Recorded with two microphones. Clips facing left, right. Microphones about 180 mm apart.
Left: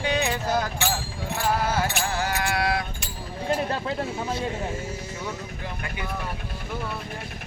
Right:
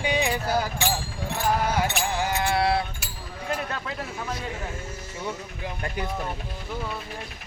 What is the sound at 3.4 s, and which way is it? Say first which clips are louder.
Speech: left 5 dB; 30° left (ahead or behind).